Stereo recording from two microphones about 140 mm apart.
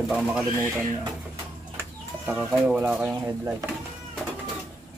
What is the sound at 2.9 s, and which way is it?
Speech, 15° right (ahead or behind).